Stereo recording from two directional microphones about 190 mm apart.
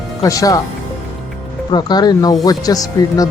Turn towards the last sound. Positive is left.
turn(degrees=20)  # may be behind; listen again after turning